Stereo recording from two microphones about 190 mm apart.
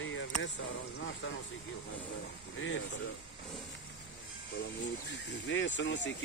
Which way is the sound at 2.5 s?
90° left.